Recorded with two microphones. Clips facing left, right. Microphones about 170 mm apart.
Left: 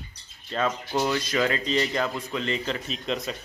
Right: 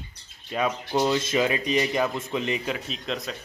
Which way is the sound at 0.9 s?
20° right (ahead or behind).